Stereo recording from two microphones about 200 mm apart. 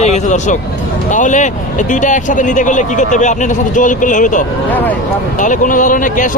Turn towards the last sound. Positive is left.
turn(degrees=40)  # may be behind; listen again after turning